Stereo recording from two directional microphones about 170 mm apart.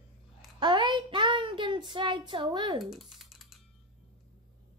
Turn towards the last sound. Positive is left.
turn(degrees=0)  # may be behind; listen again after turning